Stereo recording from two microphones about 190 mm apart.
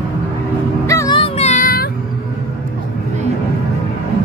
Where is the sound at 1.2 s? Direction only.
35° left (ahead or behind).